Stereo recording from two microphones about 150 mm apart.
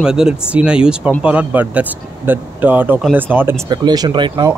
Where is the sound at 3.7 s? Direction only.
30° right (ahead or behind).